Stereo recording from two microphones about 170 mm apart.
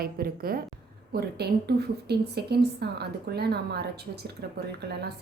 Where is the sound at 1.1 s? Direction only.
70° right (ahead or behind).